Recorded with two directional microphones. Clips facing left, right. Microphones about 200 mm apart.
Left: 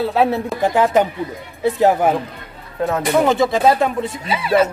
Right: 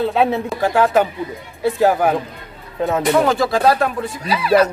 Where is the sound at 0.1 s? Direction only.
10° left (ahead or behind).